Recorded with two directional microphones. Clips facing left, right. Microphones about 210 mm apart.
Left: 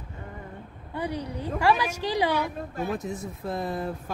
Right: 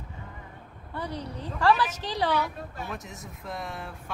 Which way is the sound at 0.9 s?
10° left (ahead or behind).